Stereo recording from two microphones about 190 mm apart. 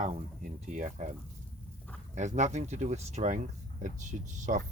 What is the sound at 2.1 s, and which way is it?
Speech, 40° right (ahead or behind).